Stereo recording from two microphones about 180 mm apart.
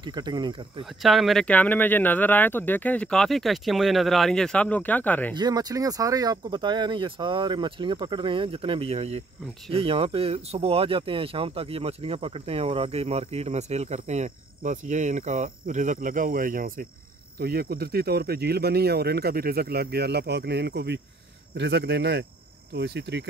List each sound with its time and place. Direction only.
0.0 s speech: 25° right (ahead or behind)
1.0 s speech: centre (ahead or behind)
5.3 s speech: 20° right (ahead or behind); by 23.2 s 70° right (ahead or behind)